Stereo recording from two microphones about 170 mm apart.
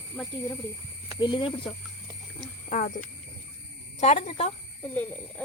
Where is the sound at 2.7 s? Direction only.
45° left (ahead or behind).